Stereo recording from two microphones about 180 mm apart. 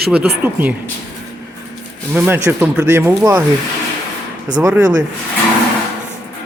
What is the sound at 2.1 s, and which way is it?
Speech, 10° right (ahead or behind).